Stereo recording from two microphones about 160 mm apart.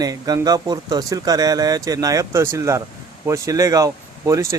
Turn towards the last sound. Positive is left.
turn(degrees=-20)  # may be behind; listen again after turning